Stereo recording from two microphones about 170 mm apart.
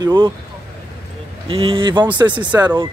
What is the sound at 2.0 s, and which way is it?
Speech, 10° right (ahead or behind).